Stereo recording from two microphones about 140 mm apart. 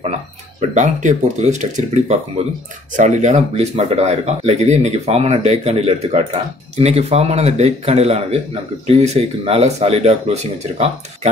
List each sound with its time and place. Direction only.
0.6 s speech: 60° right (ahead or behind)